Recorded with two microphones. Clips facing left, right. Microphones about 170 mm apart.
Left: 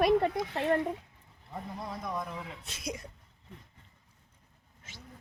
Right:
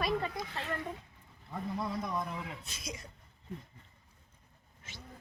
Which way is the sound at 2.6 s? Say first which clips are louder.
Left 6 dB; 65° left (ahead or behind).